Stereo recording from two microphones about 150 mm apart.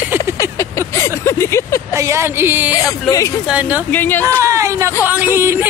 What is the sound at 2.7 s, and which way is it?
Speech, 25° left (ahead or behind).